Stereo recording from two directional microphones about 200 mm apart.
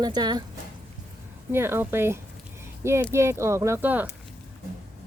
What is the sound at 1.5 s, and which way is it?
Speech, 10° right (ahead or behind).